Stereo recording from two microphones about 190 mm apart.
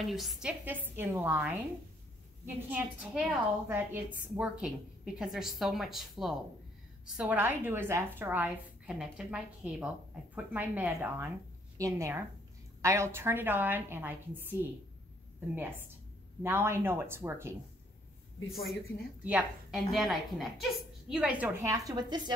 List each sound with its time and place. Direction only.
0.0 s a woman's voice: centre (ahead or behind)
18.5 s a woman's voice: centre (ahead or behind); by 22.3 s 20° right (ahead or behind)